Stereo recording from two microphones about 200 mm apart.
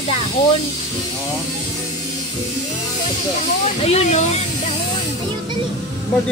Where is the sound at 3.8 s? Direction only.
35° left (ahead or behind).